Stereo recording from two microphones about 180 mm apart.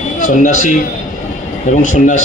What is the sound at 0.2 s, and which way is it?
Speech, 45° left (ahead or behind).